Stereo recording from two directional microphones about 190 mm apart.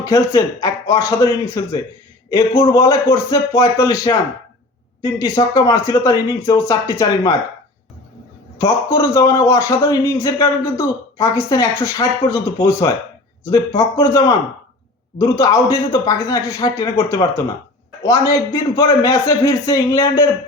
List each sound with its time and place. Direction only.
0.0 s a man's voice: 20° left (ahead or behind)
5.2 s a man's voice: 20° left (ahead or behind)
8.6 s a man's voice: 15° left (ahead or behind)